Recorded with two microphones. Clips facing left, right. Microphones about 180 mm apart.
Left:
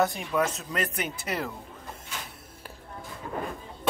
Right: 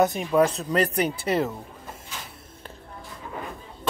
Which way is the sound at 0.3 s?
35° right (ahead or behind).